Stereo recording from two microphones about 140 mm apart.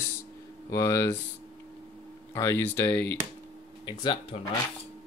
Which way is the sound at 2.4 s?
20° left (ahead or behind).